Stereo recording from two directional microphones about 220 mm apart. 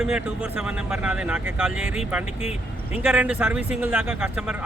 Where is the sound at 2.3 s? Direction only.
30° left (ahead or behind).